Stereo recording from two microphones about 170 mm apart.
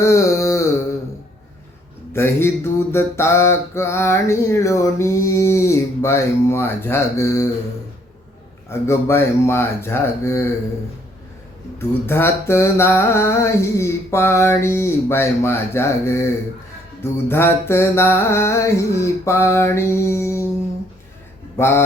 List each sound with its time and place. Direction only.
0.0 s a sound: 20° left (ahead or behind)
2.1 s mantra: 15° left (ahead or behind)
8.7 s mantra: 15° left (ahead or behind)
11.8 s mantra: 15° left (ahead or behind)
21.5 s speech: 15° left (ahead or behind)